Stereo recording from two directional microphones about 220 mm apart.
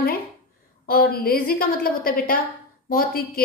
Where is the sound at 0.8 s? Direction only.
40° left (ahead or behind).